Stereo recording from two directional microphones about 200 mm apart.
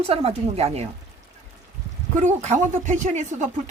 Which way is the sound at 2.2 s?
35° right (ahead or behind).